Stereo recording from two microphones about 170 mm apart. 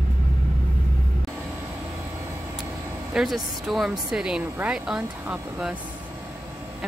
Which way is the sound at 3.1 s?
Centre (ahead or behind).